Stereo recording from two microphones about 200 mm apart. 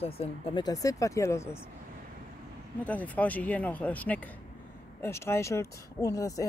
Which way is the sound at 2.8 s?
5° left (ahead or behind).